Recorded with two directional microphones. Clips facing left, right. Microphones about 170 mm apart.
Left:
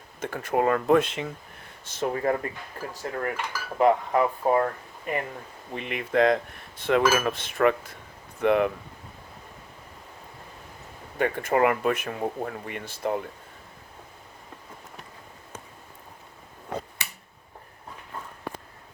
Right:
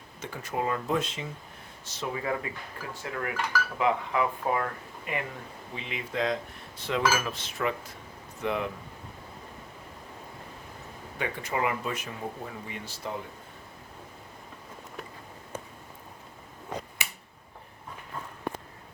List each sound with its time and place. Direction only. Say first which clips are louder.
0.2 s speech: left 7 dB; 55° left (ahead or behind); by 5.2 s 40° left (ahead or behind)
5.7 s speech: left 9 dB; 60° left (ahead or behind)
11.2 s speech: left 8 dB; 50° left (ahead or behind)